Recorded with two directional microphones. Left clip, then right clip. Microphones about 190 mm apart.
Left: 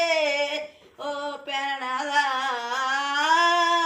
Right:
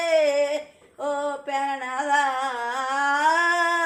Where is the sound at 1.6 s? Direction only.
20° right (ahead or behind).